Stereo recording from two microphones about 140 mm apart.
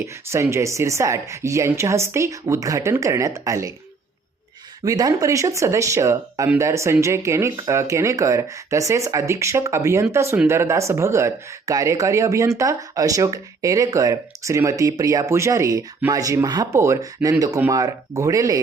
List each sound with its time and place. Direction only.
0.0 s speech: 20° right (ahead or behind)
4.9 s speech: 25° right (ahead or behind)